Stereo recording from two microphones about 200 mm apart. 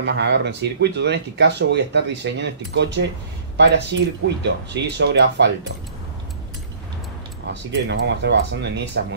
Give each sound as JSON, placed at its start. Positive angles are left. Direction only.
{"t": 0.0, "sound": "speech", "side_deg": -60}
{"t": 7.7, "sound": "speech", "side_deg": -60}